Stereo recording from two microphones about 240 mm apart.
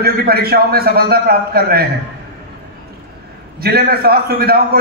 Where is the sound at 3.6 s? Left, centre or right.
Right.